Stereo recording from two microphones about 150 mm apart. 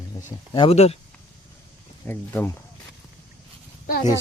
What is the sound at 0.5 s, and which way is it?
Speech, 40° left (ahead or behind).